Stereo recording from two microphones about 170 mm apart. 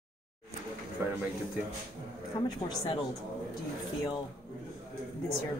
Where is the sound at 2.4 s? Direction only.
25° left (ahead or behind).